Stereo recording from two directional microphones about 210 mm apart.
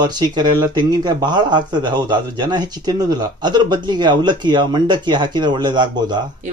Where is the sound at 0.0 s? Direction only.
20° right (ahead or behind).